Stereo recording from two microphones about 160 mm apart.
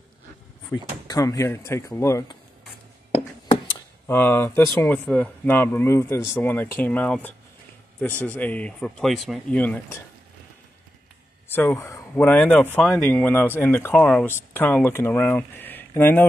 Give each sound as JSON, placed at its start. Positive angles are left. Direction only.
{"t": 0.7, "sound": "speech", "side_deg": 20}
{"t": 4.1, "sound": "speech", "side_deg": 15}
{"t": 9.6, "sound": "speech", "side_deg": 10}
{"t": 11.4, "sound": "speech", "side_deg": 15}